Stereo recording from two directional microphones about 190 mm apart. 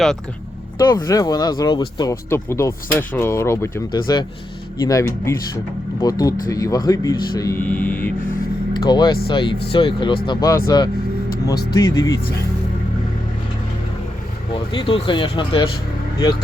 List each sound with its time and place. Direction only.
0.8 s speech: 20° left (ahead or behind)
8.8 s speech: 25° left (ahead or behind)
14.7 s speech: 25° left (ahead or behind)